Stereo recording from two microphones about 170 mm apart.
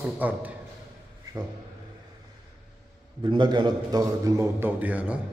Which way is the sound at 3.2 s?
25° right (ahead or behind).